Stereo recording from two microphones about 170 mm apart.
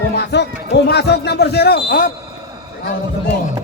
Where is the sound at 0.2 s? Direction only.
90° left; by 2.1 s 55° left (ahead or behind).